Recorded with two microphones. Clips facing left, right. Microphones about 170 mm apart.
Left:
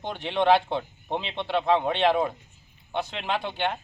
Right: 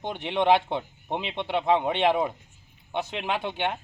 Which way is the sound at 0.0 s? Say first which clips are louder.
Left 1 dB; 15° right (ahead or behind).